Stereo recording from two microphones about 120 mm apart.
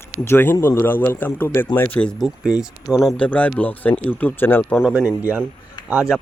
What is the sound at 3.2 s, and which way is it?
Speech, 10° left (ahead or behind).